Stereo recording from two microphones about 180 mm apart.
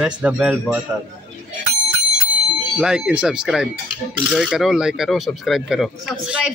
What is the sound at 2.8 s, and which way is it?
A woman's voice, 5° right (ahead or behind).